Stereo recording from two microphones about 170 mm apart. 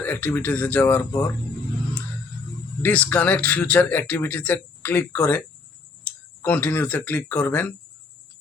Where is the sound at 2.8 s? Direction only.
10° left (ahead or behind).